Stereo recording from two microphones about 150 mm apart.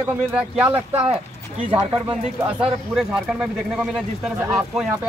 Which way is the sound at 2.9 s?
5° right (ahead or behind).